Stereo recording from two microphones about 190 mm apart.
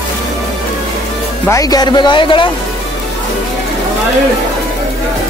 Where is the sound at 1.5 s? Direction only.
20° left (ahead or behind).